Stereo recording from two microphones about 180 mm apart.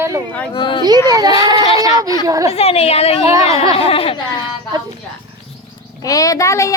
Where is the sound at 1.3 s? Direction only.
30° left (ahead or behind).